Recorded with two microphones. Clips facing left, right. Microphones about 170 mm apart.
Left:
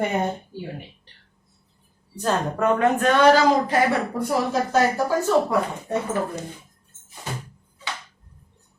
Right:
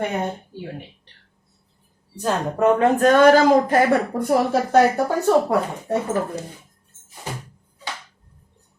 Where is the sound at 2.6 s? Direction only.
30° right (ahead or behind); by 4.6 s 50° right (ahead or behind).